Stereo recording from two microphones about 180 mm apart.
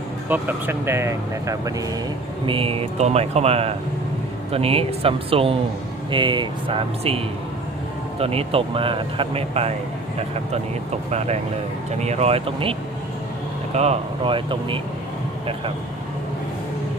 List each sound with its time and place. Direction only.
0.3 s speech: 10° right (ahead or behind)
2.5 s speech: 30° right (ahead or behind)
11.1 s speech: 35° right (ahead or behind)
13.7 s speech: 35° right (ahead or behind)